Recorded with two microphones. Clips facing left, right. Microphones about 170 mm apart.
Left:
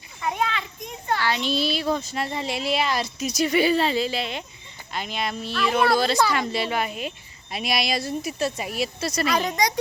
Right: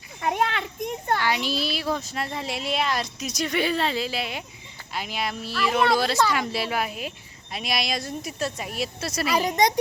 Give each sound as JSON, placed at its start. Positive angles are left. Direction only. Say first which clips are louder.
{"t": 0.2, "sound": "children playing", "louder": "right 1 dB", "side_deg": -55}
{"t": 1.2, "sound": "speech", "louder": "left 2 dB", "side_deg": -10}